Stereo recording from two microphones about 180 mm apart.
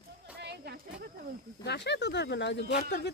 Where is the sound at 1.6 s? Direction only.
70° left (ahead or behind).